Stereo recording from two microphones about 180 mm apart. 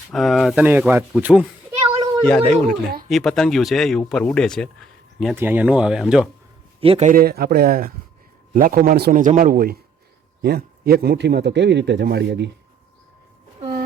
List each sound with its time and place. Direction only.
0.1 s speech: centre (ahead or behind)
2.2 s speech: 5° left (ahead or behind)
5.4 s speech: 10° right (ahead or behind)
6.7 s a man's voice: 30° right (ahead or behind)
7.1 s a man's voice: 55° right (ahead or behind)